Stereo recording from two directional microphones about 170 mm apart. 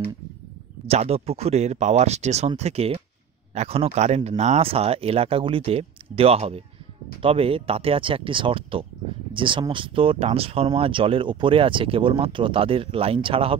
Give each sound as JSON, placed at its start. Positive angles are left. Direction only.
{"t": 0.8, "sound": "speech", "side_deg": -35}